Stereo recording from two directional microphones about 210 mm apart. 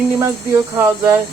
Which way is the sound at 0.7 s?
10° right (ahead or behind).